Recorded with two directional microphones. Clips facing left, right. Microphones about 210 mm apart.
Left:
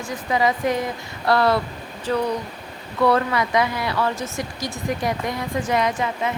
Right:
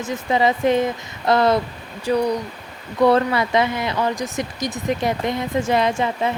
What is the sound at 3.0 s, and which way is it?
Speech, 25° right (ahead or behind).